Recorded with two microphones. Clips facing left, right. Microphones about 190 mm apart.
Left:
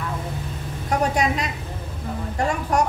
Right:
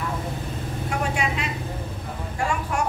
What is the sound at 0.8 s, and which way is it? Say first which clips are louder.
Vehicle: left 6 dB; 40° left (ahead or behind).